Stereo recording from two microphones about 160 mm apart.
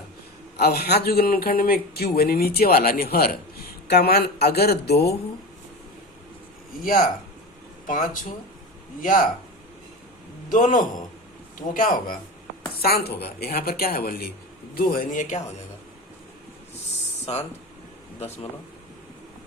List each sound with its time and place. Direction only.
0.5 s speech: 80° left
3.8 s speech: 85° left
6.8 s a man's voice: 55° left (ahead or behind)
10.5 s a man's voice: 55° left (ahead or behind)
12.8 s speech: 75° left (ahead or behind)
14.8 s a man's voice: 60° left (ahead or behind)
17.3 s speech: 40° left (ahead or behind)